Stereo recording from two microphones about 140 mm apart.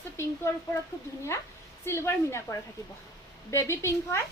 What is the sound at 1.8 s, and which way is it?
A woman's voice, 20° left (ahead or behind).